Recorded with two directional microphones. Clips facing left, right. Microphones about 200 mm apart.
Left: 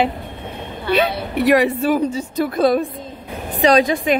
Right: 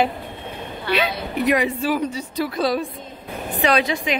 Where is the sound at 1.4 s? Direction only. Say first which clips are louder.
Left 5 dB; 65° left (ahead or behind).